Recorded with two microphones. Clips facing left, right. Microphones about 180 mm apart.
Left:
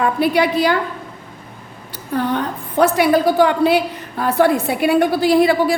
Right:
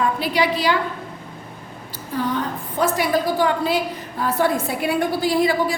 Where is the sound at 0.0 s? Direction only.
55° left (ahead or behind).